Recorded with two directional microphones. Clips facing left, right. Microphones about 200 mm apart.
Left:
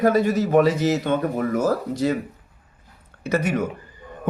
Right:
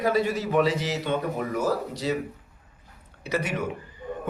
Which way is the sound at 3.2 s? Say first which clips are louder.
Left 6 dB; 45° left (ahead or behind).